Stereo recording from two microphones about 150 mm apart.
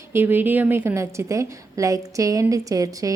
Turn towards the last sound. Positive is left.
turn(degrees=-20)  # may be behind; listen again after turning